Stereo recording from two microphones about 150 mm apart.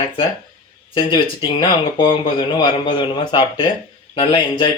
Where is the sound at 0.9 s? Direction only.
30° left (ahead or behind).